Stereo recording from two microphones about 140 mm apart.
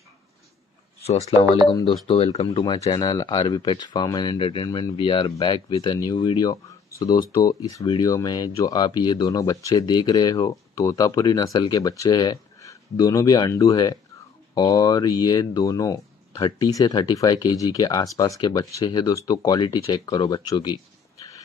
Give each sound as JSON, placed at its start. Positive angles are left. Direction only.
{"t": 1.7, "sound": "speech", "side_deg": 35}
{"t": 2.0, "sound": "speech", "side_deg": 45}
{"t": 2.6, "sound": "speech", "side_deg": 30}